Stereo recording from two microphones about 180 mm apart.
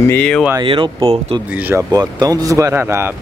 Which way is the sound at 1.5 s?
10° right (ahead or behind).